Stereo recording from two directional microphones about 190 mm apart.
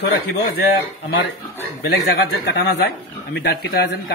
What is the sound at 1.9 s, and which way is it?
A man's voice, 70° left (ahead or behind).